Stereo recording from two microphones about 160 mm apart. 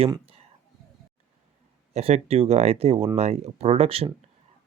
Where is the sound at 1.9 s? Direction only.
40° right (ahead or behind).